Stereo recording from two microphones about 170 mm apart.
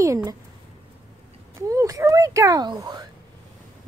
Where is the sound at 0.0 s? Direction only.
20° right (ahead or behind).